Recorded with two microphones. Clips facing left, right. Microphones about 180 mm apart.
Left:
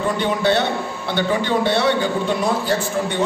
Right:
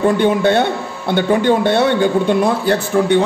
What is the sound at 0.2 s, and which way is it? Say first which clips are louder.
A man's voice: right 5 dB; 50° right (ahead or behind).